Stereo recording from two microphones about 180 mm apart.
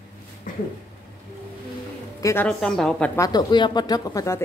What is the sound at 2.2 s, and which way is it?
Speech, 15° left (ahead or behind).